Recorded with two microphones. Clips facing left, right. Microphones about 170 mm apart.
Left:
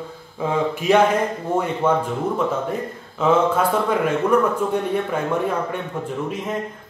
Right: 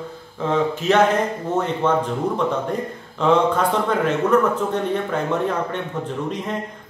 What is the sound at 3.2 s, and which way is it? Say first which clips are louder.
Speech: even; 5° left (ahead or behind).